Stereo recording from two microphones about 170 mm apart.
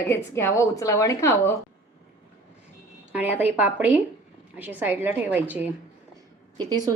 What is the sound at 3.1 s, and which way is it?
A woman's voice, 10° right (ahead or behind).